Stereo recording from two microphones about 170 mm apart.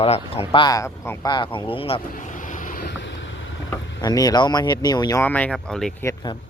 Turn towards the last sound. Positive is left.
turn(degrees=20)  # may be behind; listen again after turning